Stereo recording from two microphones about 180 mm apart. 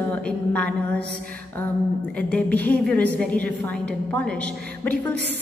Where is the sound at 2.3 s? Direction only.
10° left (ahead or behind).